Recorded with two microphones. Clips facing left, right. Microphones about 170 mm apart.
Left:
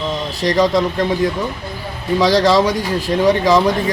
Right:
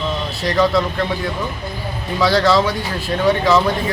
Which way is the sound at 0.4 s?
20° left (ahead or behind).